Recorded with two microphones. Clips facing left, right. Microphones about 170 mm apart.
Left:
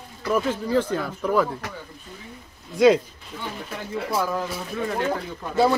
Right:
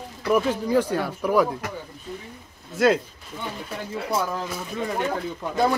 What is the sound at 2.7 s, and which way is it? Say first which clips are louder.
Speech: left 3 dB; centre (ahead or behind).